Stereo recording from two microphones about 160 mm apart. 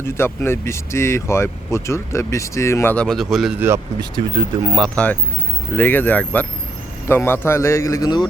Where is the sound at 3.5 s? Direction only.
15° right (ahead or behind).